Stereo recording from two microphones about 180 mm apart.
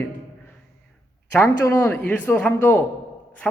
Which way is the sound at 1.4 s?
15° left (ahead or behind).